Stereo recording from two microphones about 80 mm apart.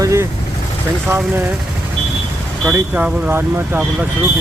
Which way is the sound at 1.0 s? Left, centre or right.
Right.